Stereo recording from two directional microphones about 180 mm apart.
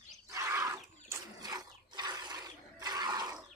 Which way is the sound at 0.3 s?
15° right (ahead or behind).